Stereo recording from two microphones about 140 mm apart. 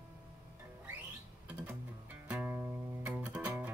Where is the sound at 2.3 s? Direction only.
15° right (ahead or behind).